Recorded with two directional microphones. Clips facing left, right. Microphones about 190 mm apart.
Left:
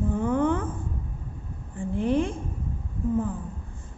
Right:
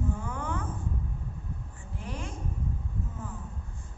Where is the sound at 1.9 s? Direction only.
90° left.